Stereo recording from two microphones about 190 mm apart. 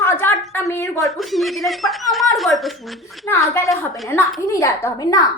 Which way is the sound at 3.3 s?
15° left (ahead or behind).